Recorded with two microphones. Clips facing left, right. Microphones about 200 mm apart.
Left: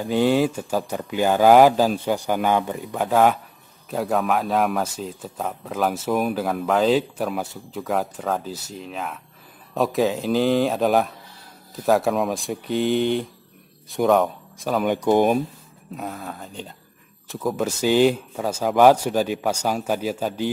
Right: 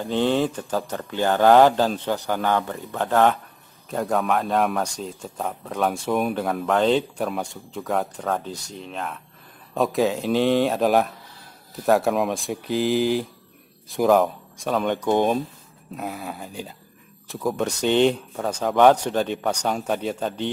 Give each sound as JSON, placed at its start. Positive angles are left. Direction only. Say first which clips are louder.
{"t": 0.0, "sound": "speech", "louder": "left 2 dB", "side_deg": 10}
{"t": 3.9, "sound": "a man's voice", "louder": "left 1 dB", "side_deg": 0}
{"t": 16.0, "sound": "a man's voice", "louder": "right 1 dB", "side_deg": -5}